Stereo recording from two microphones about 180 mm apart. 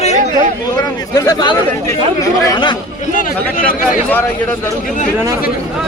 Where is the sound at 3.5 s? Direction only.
50° left (ahead or behind).